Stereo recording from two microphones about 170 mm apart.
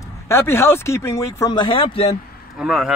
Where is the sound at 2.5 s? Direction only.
5° right (ahead or behind).